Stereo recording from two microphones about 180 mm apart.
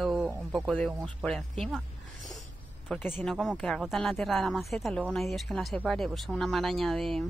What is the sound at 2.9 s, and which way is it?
Speech, 10° left (ahead or behind).